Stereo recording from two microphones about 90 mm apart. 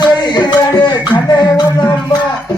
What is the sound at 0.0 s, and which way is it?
Music, 50° left (ahead or behind).